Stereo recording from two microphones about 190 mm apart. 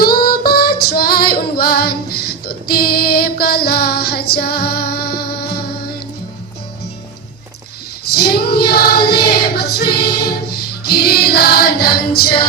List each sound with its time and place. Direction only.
0.0 s female singing: 50° left (ahead or behind)
8.1 s choir: 55° left (ahead or behind)
10.8 s music: 55° left (ahead or behind)